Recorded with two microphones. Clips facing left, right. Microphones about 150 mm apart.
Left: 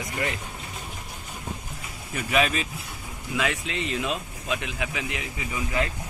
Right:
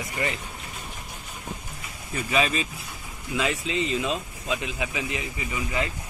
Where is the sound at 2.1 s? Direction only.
Centre (ahead or behind).